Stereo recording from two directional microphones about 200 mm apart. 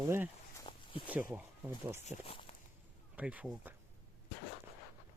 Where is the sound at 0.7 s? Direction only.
25° left (ahead or behind).